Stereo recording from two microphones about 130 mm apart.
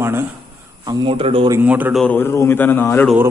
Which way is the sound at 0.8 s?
40° right (ahead or behind).